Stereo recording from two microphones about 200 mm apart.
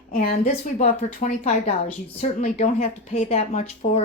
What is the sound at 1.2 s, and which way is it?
A woman's voice, 35° left (ahead or behind).